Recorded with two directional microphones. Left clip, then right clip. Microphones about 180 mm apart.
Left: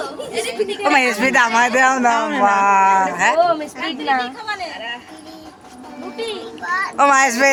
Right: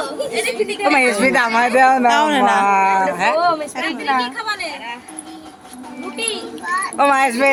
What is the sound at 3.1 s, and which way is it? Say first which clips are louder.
Speech: even; 10° right (ahead or behind).